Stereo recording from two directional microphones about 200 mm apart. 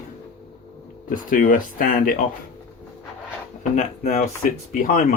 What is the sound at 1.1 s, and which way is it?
Speech, 45° left (ahead or behind).